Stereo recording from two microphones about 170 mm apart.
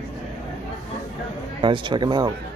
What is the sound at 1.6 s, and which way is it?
Speech, 30° right (ahead or behind).